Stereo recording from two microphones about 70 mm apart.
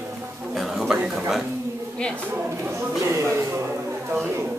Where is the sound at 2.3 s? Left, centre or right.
Right.